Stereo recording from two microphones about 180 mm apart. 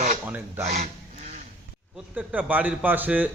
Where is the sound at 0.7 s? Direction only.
40° right (ahead or behind).